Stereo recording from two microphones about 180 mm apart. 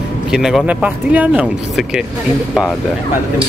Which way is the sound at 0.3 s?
5° right (ahead or behind).